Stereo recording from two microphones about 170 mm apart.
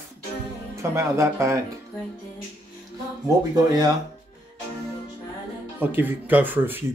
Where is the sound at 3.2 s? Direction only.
20° right (ahead or behind).